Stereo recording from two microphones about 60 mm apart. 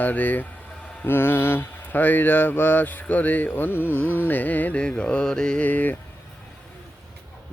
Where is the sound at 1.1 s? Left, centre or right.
Left.